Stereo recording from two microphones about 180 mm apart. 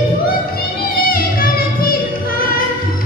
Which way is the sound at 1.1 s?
55° left (ahead or behind).